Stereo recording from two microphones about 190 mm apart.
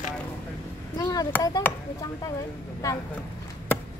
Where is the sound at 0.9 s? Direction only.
20° left (ahead or behind).